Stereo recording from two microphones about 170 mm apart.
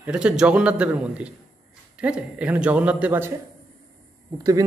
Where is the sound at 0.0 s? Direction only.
5° right (ahead or behind).